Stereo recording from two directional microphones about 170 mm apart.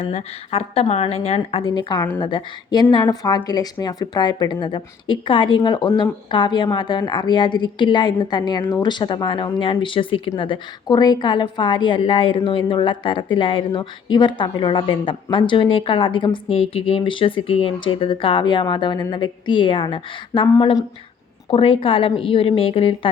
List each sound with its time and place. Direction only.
0.0 s a woman's voice: 40° left (ahead or behind)